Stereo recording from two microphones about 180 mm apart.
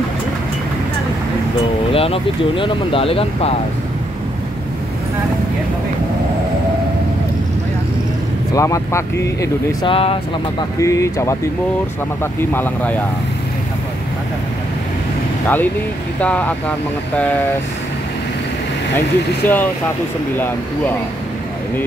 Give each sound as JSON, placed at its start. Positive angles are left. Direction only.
{"t": 1.9, "sound": "speech", "side_deg": 30}
{"t": 8.5, "sound": "speech", "side_deg": 15}
{"t": 9.8, "sound": "speech", "side_deg": 30}
{"t": 10.8, "sound": "speech", "side_deg": 15}
{"t": 15.4, "sound": "speech", "side_deg": 10}
{"t": 19.4, "sound": "speech", "side_deg": 10}